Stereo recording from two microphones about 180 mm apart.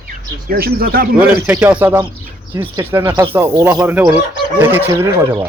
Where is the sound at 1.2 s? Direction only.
5° right (ahead or behind).